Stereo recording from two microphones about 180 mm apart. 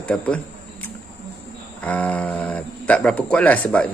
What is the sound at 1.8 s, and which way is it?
Speech, 10° left (ahead or behind).